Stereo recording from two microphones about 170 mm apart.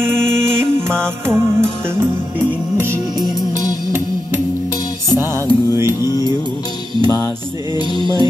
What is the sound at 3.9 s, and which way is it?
Music, 15° right (ahead or behind).